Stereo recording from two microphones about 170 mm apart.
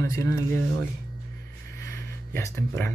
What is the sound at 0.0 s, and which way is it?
Speech, 20° left (ahead or behind).